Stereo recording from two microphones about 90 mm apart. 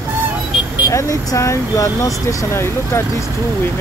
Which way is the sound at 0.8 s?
40° left (ahead or behind).